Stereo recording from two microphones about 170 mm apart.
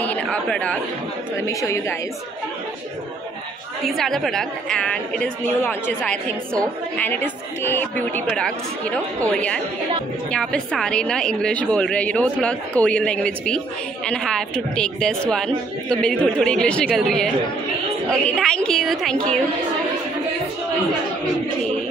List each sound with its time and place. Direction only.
0.0 s a man's voice: 10° left (ahead or behind)
1.4 s speech: 15° left (ahead or behind)
3.8 s a woman's voice: centre (ahead or behind)
18.3 s a woman's voice: 5° left (ahead or behind)